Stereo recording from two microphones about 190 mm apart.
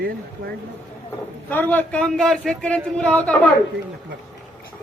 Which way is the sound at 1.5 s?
10° left (ahead or behind).